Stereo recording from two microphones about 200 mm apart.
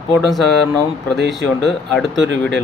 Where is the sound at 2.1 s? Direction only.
60° right (ahead or behind).